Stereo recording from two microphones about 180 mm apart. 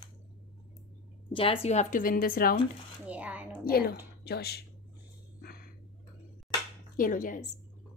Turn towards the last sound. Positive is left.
turn(degrees=45)  # may be behind; listen again after turning